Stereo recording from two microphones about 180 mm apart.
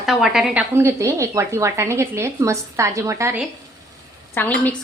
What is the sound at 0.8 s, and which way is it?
A woman's voice, 15° right (ahead or behind).